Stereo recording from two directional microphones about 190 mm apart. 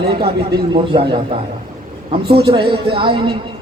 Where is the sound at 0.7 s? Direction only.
25° right (ahead or behind).